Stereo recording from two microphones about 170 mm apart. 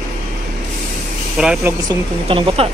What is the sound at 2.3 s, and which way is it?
Speech, 35° right (ahead or behind).